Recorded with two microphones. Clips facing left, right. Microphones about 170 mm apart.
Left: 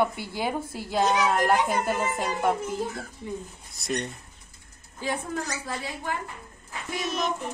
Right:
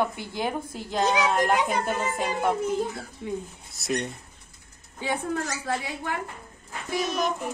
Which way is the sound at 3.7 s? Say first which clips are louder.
Right 2 dB; 5° right (ahead or behind).